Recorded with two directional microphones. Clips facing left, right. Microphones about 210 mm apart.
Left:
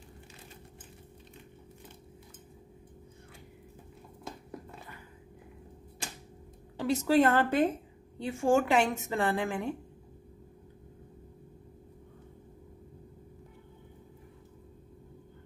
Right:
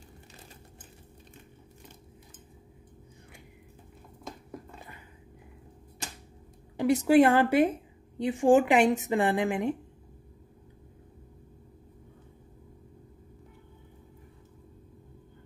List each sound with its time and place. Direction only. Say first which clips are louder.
6.8 s a woman's voice: right 4 dB; 15° right (ahead or behind)